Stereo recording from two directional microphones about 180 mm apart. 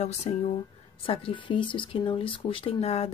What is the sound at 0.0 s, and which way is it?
Speech, 40° left (ahead or behind).